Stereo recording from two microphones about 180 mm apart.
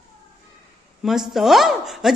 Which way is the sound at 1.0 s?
Centre (ahead or behind).